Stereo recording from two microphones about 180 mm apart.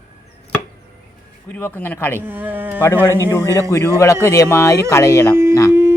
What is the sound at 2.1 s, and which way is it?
Speech, 10° right (ahead or behind).